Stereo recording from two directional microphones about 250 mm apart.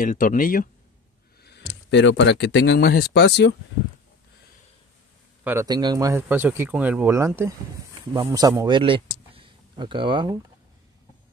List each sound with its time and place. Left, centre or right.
0.0 s speech: left
5.4 s speech: centre
9.3 s a sound: centre